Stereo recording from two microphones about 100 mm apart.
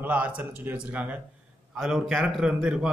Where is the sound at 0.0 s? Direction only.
15° right (ahead or behind).